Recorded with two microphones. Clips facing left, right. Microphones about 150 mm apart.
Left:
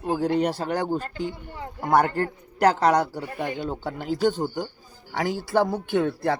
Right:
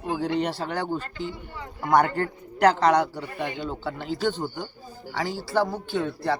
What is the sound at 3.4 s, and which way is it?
Speech, 45° left (ahead or behind).